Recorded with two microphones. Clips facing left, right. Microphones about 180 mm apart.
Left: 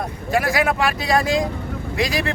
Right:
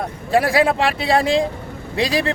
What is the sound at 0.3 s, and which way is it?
A man's voice, 30° right (ahead or behind).